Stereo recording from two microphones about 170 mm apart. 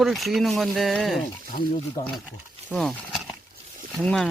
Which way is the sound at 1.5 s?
35° left (ahead or behind).